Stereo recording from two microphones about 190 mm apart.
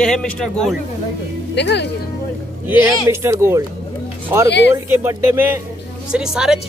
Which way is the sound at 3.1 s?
15° right (ahead or behind).